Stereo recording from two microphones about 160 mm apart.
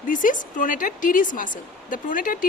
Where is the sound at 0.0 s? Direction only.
55° left (ahead or behind).